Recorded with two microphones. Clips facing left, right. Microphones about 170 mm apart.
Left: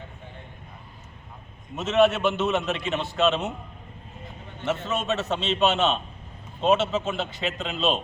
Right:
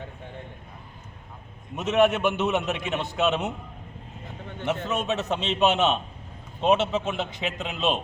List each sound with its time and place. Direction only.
1.7 s a man's voice: 15° right (ahead or behind)
4.9 s a man's voice: 15° right (ahead or behind)